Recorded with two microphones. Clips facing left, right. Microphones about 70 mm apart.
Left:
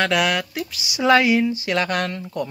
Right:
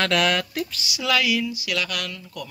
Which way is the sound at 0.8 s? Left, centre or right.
Left.